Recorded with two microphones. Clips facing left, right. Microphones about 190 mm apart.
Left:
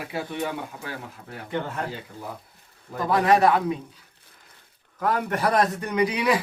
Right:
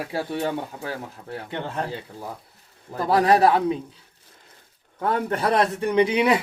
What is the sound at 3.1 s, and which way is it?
Speech, 35° right (ahead or behind).